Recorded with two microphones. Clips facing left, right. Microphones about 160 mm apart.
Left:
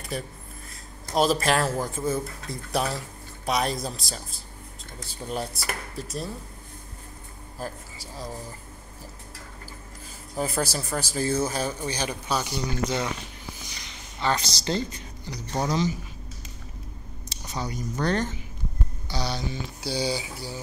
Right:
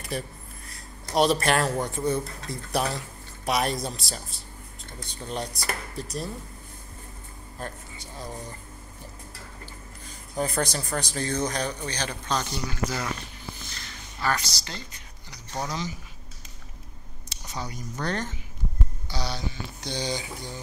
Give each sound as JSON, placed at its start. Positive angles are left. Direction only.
{"t": 0.1, "sound": "speech", "side_deg": 0}
{"t": 7.5, "sound": "speech", "side_deg": 5}
{"t": 10.0, "sound": "speech", "side_deg": 5}
{"t": 12.7, "sound": "speech", "side_deg": 25}
{"t": 13.6, "sound": "a sound", "side_deg": 15}
{"t": 17.5, "sound": "speech", "side_deg": 30}
{"t": 19.1, "sound": "speech", "side_deg": 20}
{"t": 19.8, "sound": "speech", "side_deg": 10}